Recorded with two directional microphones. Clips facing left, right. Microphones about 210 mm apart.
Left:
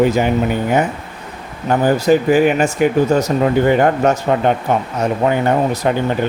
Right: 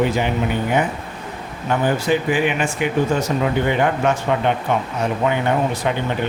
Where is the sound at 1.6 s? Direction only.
40° left (ahead or behind).